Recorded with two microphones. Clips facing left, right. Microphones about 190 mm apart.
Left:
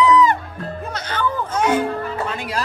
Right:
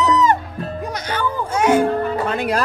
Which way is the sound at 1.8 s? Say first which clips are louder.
Right 5 dB; 55° right (ahead or behind).